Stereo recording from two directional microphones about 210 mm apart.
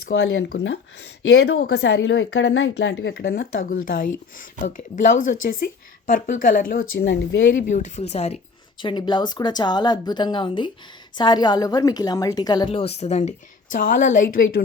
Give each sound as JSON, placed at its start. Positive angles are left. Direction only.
{"t": 0.1, "sound": "speech", "side_deg": 55}
{"t": 7.6, "sound": "a woman's voice", "side_deg": 35}